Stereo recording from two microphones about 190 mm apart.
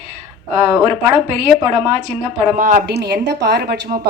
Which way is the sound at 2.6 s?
45° right (ahead or behind).